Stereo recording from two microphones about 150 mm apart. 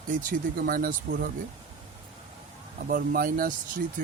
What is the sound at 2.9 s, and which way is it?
Speech, 70° right (ahead or behind).